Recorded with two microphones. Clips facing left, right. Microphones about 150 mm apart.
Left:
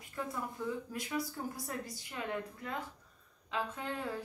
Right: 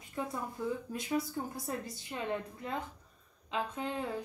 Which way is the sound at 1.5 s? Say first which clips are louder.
Right 3 dB; 25° right (ahead or behind).